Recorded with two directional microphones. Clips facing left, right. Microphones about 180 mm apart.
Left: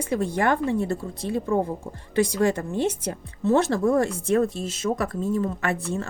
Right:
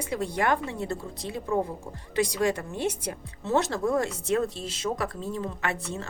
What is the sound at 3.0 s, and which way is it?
Speech, 50° left (ahead or behind).